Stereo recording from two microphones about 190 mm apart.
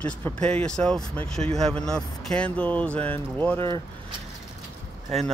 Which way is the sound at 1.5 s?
Centre (ahead or behind).